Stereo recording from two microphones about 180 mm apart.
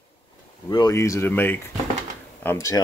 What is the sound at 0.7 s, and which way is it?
Speech, 20° left (ahead or behind).